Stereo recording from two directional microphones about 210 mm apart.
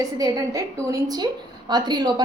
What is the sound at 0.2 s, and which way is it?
A woman's voice, 15° right (ahead or behind).